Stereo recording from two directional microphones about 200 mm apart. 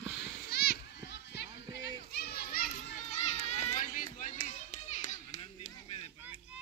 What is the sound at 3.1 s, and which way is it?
Children playing, 35° left (ahead or behind).